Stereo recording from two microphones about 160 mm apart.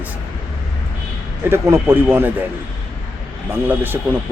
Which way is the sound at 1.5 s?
15° right (ahead or behind).